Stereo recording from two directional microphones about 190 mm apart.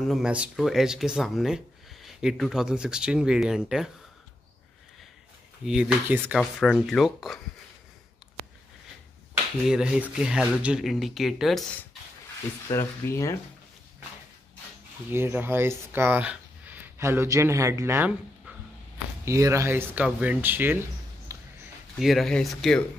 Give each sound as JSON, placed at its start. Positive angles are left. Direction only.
{"t": 0.0, "sound": "speech", "side_deg": 0}
{"t": 5.7, "sound": "speech", "side_deg": -5}
{"t": 6.6, "sound": "speech", "side_deg": 0}
{"t": 9.7, "sound": "speech", "side_deg": -5}
{"t": 12.6, "sound": "speech", "side_deg": 15}
{"t": 15.0, "sound": "speech", "side_deg": -10}
{"t": 19.2, "sound": "speech", "side_deg": -15}
{"t": 21.3, "sound": "a sound", "side_deg": -15}
{"t": 21.9, "sound": "speech", "side_deg": 0}